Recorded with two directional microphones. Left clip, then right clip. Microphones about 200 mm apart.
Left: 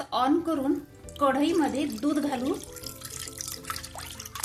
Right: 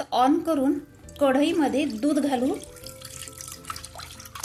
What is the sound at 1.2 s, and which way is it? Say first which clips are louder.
A woman's voice: right 3 dB; 35° right (ahead or behind).